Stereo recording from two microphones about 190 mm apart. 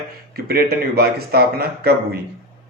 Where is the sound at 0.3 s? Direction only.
55° right (ahead or behind).